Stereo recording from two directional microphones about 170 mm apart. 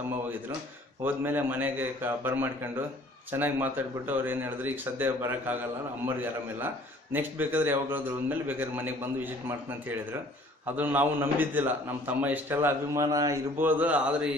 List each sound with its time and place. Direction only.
1.0 s a man's voice: 10° right (ahead or behind)
6.6 s a man's voice: 10° right (ahead or behind)